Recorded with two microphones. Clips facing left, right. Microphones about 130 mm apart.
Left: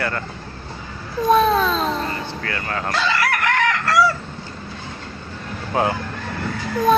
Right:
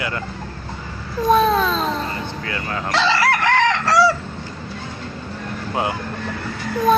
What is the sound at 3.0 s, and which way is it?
Chicken, 30° right (ahead or behind).